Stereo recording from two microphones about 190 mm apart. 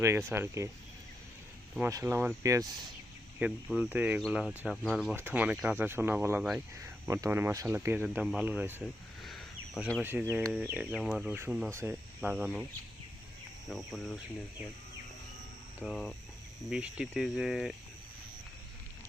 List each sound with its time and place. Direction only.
0.3 s speech: 15° right (ahead or behind)
1.9 s speech: 15° right (ahead or behind)
8.8 s speech: centre (ahead or behind)
13.7 s speech: centre (ahead or behind)
15.8 s speech: 5° left (ahead or behind)